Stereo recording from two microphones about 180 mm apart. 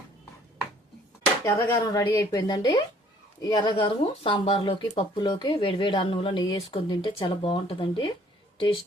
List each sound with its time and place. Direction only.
1.5 s speech: 15° left (ahead or behind)